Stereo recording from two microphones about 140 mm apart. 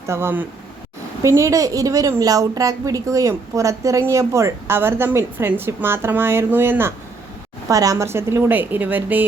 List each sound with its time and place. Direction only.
0.0 s a woman's voice: 20° right (ahead or behind)